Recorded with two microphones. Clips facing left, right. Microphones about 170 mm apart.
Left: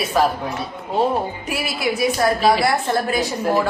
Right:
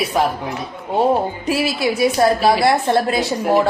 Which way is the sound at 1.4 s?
25° right (ahead or behind).